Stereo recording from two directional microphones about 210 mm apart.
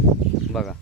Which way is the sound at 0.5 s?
Centre (ahead or behind).